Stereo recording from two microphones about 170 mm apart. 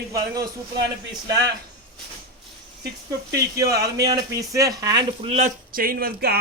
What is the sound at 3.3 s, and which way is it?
A man's voice, 20° right (ahead or behind).